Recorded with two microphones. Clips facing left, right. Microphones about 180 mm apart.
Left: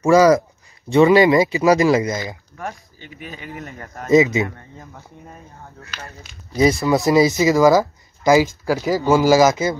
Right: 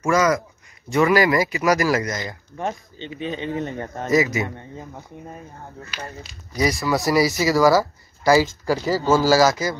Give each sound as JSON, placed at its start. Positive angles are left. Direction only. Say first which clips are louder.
{"t": 0.0, "sound": "speech", "louder": "left 7 dB", "side_deg": 30}
{"t": 2.5, "sound": "speech", "louder": "right 4 dB", "side_deg": -25}
{"t": 4.1, "sound": "speech", "louder": "left 5 dB", "side_deg": 20}
{"t": 4.5, "sound": "speech", "louder": "right 3 dB", "side_deg": -20}
{"t": 6.5, "sound": "speech", "louder": "left 5 dB", "side_deg": 25}